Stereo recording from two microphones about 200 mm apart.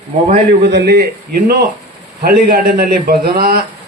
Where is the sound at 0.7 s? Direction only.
55° right (ahead or behind).